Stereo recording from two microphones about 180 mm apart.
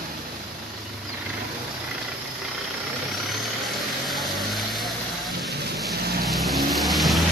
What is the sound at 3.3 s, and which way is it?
Vehicle, centre (ahead or behind).